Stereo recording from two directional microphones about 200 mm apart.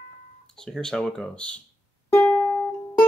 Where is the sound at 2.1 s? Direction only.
10° left (ahead or behind).